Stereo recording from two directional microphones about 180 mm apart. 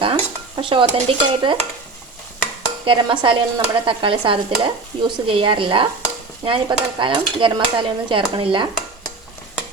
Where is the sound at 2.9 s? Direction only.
30° right (ahead or behind).